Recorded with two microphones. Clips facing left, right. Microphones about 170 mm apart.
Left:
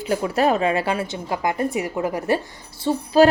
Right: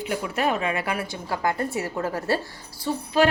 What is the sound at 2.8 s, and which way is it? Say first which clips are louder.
Speech: left 6 dB; 30° left (ahead or behind).